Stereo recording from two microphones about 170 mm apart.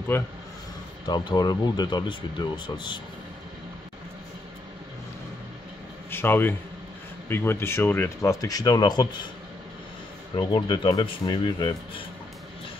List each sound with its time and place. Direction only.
0.1 s speech: 15° left (ahead or behind)
1.0 s speech: 25° left (ahead or behind)
6.0 s speech: 10° left (ahead or behind)
10.3 s speech: 25° left (ahead or behind)